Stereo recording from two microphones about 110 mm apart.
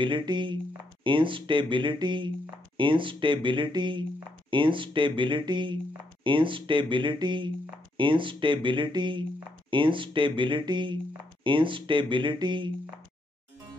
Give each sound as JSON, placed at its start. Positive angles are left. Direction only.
{"t": 0.0, "sound": "speech", "side_deg": -45}